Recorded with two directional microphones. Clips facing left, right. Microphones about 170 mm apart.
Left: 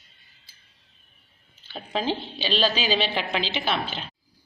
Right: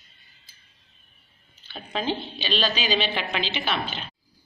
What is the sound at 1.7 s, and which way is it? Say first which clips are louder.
Speech: left 1 dB; 30° left (ahead or behind).